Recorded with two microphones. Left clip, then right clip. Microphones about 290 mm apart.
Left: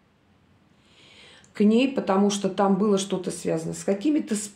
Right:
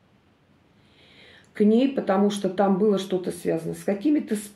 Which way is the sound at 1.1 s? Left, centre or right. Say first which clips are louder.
Right 1 dB; left.